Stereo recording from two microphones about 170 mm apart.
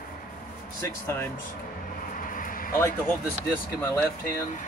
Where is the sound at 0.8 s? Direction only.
15° left (ahead or behind).